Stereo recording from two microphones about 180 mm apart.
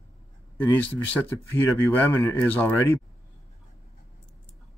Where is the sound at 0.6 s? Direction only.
10° left (ahead or behind).